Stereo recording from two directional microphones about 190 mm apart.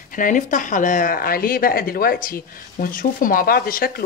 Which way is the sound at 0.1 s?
45° left (ahead or behind).